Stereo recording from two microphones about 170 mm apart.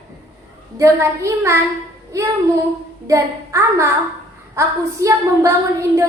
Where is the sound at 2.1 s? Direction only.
20° right (ahead or behind).